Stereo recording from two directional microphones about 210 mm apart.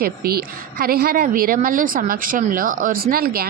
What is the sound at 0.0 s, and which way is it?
A woman's voice, 45° right (ahead or behind).